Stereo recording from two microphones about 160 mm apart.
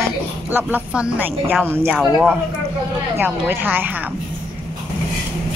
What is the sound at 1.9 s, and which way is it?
Speech, centre (ahead or behind).